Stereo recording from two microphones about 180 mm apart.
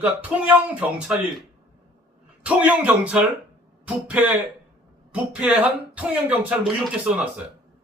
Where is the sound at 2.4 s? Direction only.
5° right (ahead or behind).